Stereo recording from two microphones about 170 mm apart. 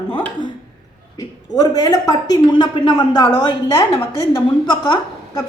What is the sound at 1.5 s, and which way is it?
A woman's voice, 25° left (ahead or behind).